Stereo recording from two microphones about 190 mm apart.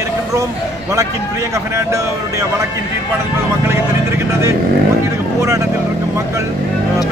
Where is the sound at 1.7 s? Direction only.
15° right (ahead or behind).